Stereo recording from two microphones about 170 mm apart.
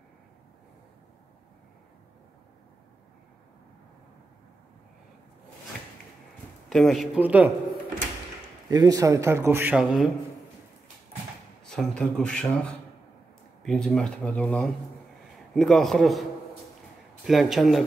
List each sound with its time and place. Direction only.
6.7 s a man's voice: centre (ahead or behind)
7.2 s a man's voice: 10° right (ahead or behind)
8.6 s a man's voice: 20° right (ahead or behind)
11.6 s speech: 5° left (ahead or behind)
13.6 s speech: 5° left (ahead or behind)
17.3 s speech: centre (ahead or behind)